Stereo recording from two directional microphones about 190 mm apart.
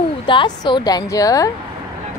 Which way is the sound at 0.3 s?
25° left (ahead or behind).